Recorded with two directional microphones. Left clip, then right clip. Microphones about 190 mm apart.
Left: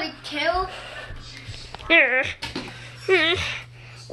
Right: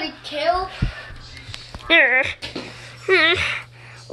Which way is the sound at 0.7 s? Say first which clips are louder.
Right 2 dB; 25° left (ahead or behind).